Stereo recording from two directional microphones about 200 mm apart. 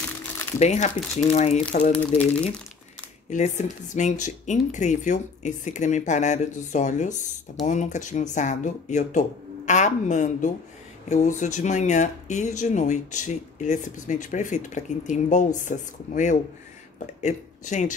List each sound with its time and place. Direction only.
0.6 s speech: 35° left (ahead or behind)
2.0 s speech: 5° left (ahead or behind)
3.3 s speech: 35° left (ahead or behind)